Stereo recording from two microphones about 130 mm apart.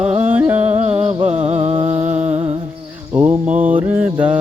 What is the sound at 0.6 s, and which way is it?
Music, 55° right (ahead or behind).